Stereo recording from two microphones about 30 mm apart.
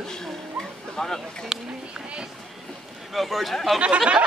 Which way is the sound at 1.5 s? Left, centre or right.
Centre.